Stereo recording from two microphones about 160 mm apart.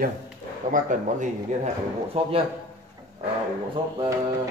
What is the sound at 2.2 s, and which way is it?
Speech, 40° right (ahead or behind).